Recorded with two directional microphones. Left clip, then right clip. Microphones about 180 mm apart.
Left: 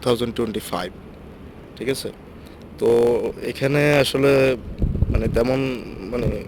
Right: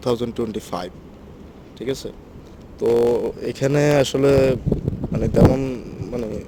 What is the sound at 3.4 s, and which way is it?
A man's voice, 30° right (ahead or behind).